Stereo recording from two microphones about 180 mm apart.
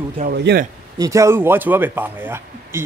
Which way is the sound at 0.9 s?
20° right (ahead or behind).